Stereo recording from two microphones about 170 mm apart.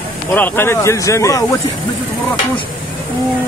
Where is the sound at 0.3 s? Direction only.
15° left (ahead or behind).